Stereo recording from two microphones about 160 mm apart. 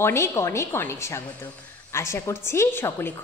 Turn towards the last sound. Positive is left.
turn(degrees=15)  # may be behind; listen again after turning